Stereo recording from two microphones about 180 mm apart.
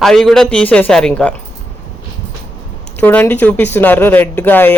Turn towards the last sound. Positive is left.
turn(degrees=10)  # may be behind; listen again after turning